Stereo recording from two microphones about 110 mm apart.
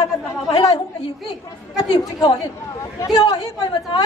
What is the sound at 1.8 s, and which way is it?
A woman's voice, 35° left (ahead or behind).